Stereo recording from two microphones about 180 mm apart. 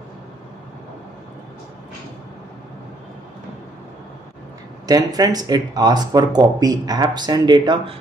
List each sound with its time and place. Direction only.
4.8 s speech: 20° right (ahead or behind)